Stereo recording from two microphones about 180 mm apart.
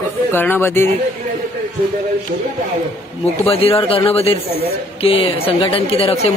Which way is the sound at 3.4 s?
30° left (ahead or behind).